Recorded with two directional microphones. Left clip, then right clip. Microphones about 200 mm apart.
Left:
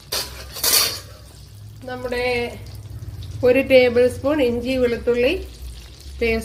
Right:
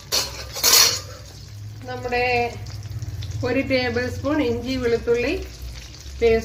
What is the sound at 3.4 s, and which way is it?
A woman's voice, 40° left (ahead or behind).